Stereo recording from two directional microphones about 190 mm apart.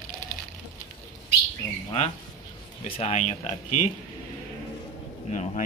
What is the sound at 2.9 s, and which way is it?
Speech, 30° left (ahead or behind).